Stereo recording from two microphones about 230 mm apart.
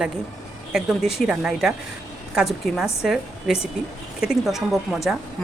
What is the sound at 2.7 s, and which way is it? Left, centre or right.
Speech, centre.